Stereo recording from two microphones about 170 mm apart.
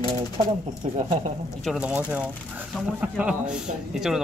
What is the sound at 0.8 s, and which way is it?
Speech, 40° right (ahead or behind).